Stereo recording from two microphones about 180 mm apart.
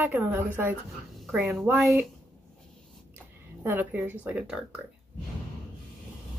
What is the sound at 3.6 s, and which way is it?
Speech, 10° right (ahead or behind).